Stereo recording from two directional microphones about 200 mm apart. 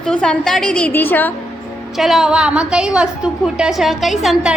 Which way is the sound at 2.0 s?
Centre (ahead or behind).